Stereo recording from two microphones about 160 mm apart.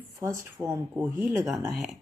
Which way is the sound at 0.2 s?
20° right (ahead or behind).